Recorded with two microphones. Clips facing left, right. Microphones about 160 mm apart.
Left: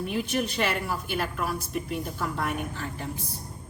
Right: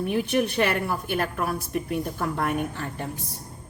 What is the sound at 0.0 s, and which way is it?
A woman's voice, 55° right (ahead or behind).